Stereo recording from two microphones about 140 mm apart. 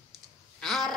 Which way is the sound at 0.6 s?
Centre (ahead or behind).